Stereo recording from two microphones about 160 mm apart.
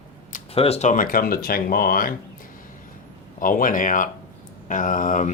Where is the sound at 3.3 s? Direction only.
60° left (ahead or behind).